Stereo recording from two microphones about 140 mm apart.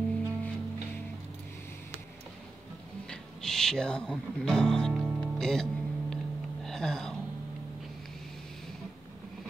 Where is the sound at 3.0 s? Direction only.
5° left (ahead or behind).